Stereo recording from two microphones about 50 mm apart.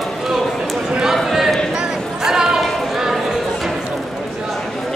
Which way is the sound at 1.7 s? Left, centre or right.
Centre.